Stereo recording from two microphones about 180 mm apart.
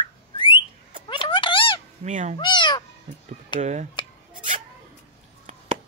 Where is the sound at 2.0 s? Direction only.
40° right (ahead or behind).